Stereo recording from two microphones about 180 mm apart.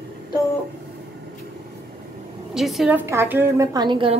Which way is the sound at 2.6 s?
Centre (ahead or behind).